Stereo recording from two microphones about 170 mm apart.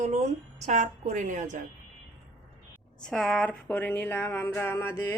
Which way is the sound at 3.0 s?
5° left (ahead or behind).